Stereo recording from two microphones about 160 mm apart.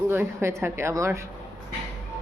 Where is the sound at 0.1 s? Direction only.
15° right (ahead or behind).